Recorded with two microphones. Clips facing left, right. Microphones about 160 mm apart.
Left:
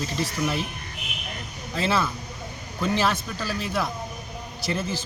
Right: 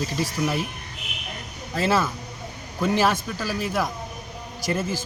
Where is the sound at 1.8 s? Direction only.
10° right (ahead or behind).